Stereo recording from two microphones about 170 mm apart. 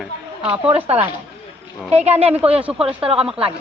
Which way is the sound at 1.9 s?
40° right (ahead or behind).